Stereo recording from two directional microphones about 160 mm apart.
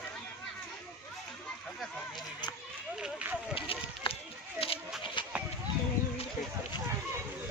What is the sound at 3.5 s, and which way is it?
Run, 35° left (ahead or behind).